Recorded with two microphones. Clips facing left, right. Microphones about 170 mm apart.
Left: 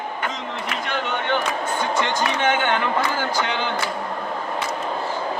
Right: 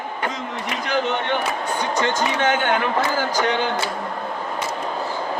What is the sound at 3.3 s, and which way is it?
Speech, 40° right (ahead or behind).